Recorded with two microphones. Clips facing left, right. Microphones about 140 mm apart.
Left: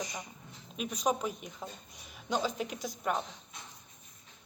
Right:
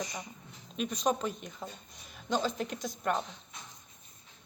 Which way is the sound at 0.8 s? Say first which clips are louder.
Right 1 dB; 10° left (ahead or behind).